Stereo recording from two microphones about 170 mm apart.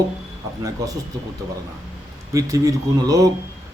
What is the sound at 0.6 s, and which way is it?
Speech, 20° right (ahead or behind).